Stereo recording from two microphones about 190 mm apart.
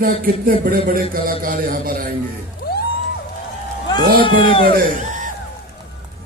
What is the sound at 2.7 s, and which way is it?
Music, 55° left (ahead or behind).